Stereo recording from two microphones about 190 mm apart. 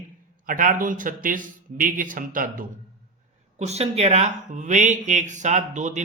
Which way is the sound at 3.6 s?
35° right (ahead or behind).